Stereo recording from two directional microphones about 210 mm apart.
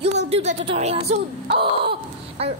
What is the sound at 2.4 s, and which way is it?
Speech, 30° right (ahead or behind).